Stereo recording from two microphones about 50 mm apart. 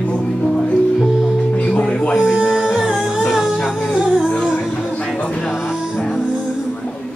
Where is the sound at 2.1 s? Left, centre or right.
Centre.